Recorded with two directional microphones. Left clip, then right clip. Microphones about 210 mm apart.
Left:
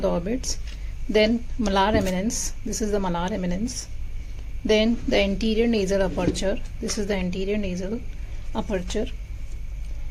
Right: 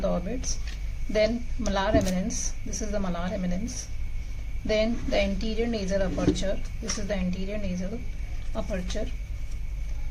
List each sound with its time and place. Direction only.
0.0 s a woman's voice: 45° left (ahead or behind)
4.6 s a woman's voice: 45° left (ahead or behind)